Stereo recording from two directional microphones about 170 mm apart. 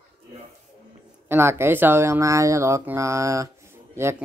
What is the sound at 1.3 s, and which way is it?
Speech, 15° right (ahead or behind).